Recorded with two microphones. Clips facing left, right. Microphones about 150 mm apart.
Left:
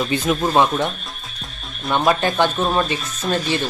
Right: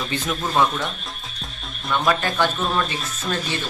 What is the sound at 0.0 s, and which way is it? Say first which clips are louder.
Speech: left 6 dB; 20° left (ahead or behind).